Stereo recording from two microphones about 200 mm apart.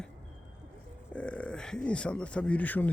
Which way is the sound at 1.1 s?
5° left (ahead or behind).